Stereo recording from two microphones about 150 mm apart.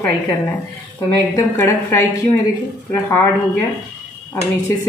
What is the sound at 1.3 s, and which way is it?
A woman's voice, 20° left (ahead or behind).